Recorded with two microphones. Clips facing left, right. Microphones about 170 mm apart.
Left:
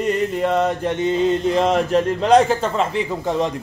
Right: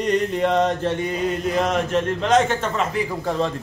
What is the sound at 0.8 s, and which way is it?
A man's voice, 20° left (ahead or behind).